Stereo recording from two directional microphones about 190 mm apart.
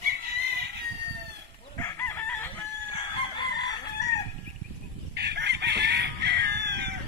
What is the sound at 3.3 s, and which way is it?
Chicken, 20° left (ahead or behind).